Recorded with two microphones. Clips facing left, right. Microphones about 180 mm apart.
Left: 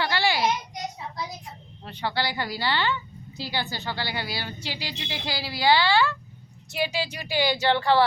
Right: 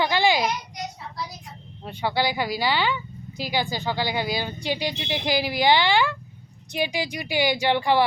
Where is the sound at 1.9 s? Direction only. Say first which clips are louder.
Right 4 dB; 15° right (ahead or behind).